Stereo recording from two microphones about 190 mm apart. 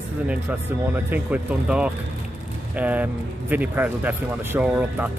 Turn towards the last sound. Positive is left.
turn(degrees=-10)  # may be behind; listen again after turning